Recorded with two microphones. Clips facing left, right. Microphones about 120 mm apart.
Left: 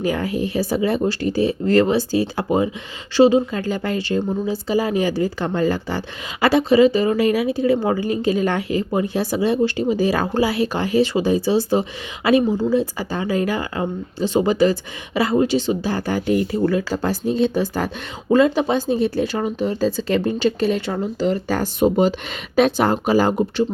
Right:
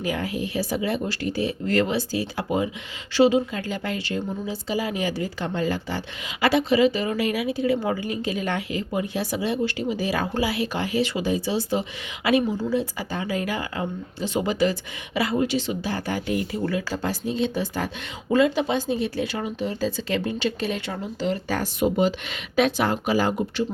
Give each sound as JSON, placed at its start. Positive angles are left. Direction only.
{"t": 0.0, "sound": "speech", "side_deg": 35}